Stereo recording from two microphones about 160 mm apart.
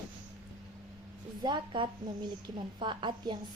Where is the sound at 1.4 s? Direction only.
30° right (ahead or behind).